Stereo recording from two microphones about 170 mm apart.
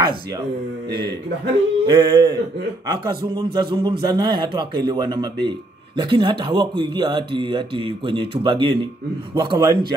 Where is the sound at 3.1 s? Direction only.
30° right (ahead or behind).